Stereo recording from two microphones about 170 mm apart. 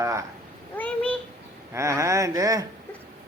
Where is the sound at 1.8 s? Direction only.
15° right (ahead or behind).